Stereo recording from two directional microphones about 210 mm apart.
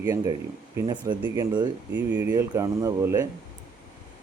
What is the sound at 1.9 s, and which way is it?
Speech, 10° right (ahead or behind).